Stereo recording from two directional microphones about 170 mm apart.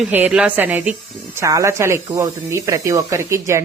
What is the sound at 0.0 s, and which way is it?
Speech, 10° right (ahead or behind).